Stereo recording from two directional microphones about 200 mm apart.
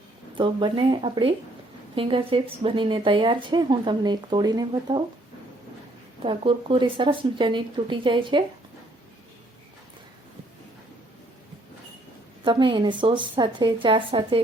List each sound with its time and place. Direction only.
0.3 s speech: 25° right (ahead or behind)
6.2 s speech: 25° right (ahead or behind)
12.5 s speech: 25° right (ahead or behind)